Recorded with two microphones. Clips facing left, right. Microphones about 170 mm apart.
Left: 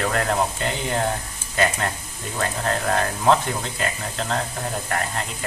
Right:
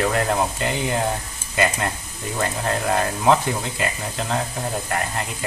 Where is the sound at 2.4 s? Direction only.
10° right (ahead or behind).